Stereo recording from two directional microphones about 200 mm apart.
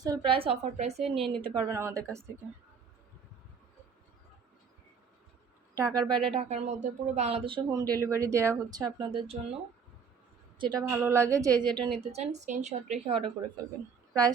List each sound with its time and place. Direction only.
0.0 s speech: 20° right (ahead or behind)
1.4 s a woman's voice: 20° right (ahead or behind)
5.7 s speech: 15° right (ahead or behind)
10.6 s a woman's voice: 20° right (ahead or behind)
12.0 s a woman's voice: 35° right (ahead or behind)